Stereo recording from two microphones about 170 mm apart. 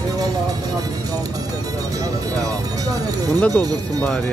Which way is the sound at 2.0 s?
20° right (ahead or behind).